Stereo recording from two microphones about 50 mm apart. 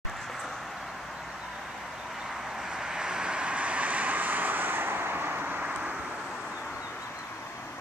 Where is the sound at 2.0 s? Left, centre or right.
Centre; by 5.8 s right.